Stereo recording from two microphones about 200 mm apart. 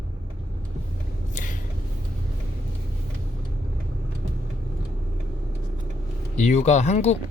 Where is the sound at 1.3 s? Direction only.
40° left (ahead or behind).